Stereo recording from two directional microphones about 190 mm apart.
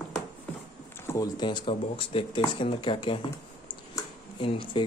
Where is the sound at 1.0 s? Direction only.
15° left (ahead or behind).